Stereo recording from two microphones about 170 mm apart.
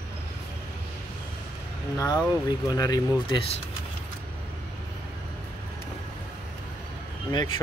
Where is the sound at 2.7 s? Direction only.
20° left (ahead or behind).